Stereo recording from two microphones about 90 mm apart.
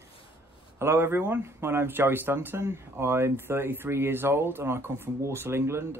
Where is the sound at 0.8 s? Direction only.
25° right (ahead or behind).